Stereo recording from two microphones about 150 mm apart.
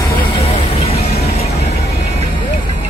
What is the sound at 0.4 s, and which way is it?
Vehicle, 45° left (ahead or behind).